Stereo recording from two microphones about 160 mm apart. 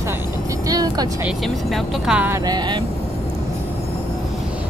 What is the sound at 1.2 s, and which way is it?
Speech, centre (ahead or behind).